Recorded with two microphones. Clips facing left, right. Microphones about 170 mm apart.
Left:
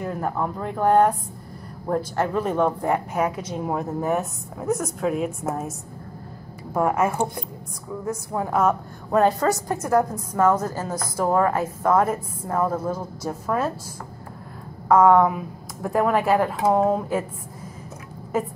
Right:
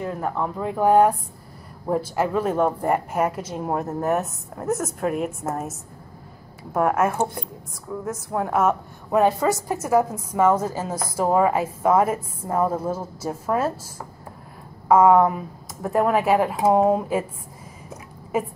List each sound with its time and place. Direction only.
0.0 s a woman's voice: centre (ahead or behind)
14.9 s a woman's voice: 5° right (ahead or behind)